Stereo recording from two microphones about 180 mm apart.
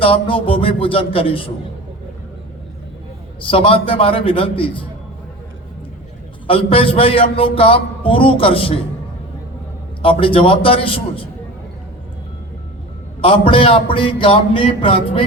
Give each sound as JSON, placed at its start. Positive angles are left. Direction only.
{"t": 0.0, "sound": "a man's voice", "side_deg": 30}
{"t": 3.5, "sound": "a man's voice", "side_deg": 30}
{"t": 6.5, "sound": "a man's voice", "side_deg": 30}
{"t": 10.0, "sound": "a man's voice", "side_deg": 30}
{"t": 13.2, "sound": "a man's voice", "side_deg": 30}
{"t": 13.9, "sound": "music", "side_deg": 30}